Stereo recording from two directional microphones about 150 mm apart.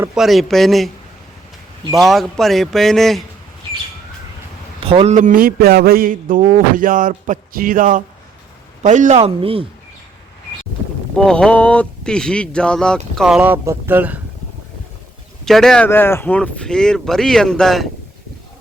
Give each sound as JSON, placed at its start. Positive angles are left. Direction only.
{"t": 0.1, "sound": "speech", "side_deg": 0}
{"t": 1.9, "sound": "speech", "side_deg": 0}
{"t": 4.8, "sound": "a man's voice", "side_deg": -40}
{"t": 5.1, "sound": "a man's voice", "side_deg": -60}
{"t": 11.2, "sound": "speech", "side_deg": 5}
{"t": 15.4, "sound": "speech", "side_deg": 0}
{"t": 15.9, "sound": "speech", "side_deg": 15}